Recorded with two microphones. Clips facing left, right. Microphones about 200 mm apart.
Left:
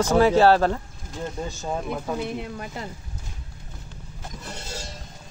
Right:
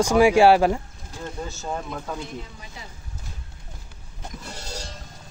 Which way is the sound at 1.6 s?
10° left (ahead or behind).